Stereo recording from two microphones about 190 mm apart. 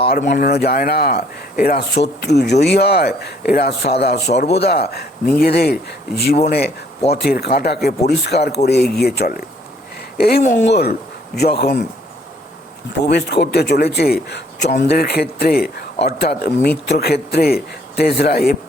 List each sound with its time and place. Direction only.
0.1 s speech: 50° left (ahead or behind)
13.1 s speech: 60° left (ahead or behind)